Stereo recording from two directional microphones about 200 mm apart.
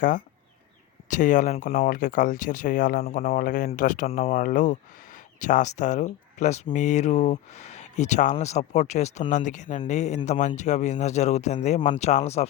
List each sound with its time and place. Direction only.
1.1 s speech: 40° left (ahead or behind)